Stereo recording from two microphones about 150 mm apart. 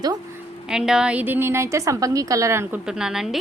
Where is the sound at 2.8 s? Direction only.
5° right (ahead or behind).